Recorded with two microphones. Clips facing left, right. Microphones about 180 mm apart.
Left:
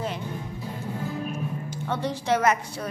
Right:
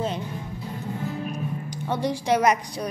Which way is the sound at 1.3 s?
15° right (ahead or behind).